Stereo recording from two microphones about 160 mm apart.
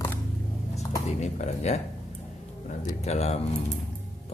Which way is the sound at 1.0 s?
45° left (ahead or behind).